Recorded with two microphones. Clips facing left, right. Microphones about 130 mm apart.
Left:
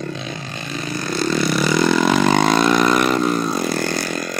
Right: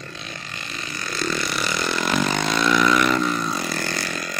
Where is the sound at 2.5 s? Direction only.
45° left (ahead or behind).